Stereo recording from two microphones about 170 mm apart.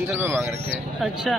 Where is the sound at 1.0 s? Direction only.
Centre (ahead or behind).